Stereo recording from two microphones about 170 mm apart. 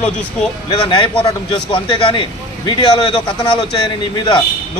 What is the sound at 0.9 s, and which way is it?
Speech, 30° left (ahead or behind).